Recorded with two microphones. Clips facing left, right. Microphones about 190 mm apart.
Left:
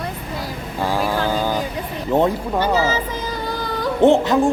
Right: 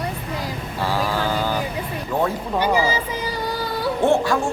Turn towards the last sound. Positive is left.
turn(degrees=20)  # may be behind; listen again after turning